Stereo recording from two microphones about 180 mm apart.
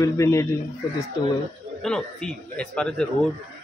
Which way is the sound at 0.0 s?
15° left (ahead or behind).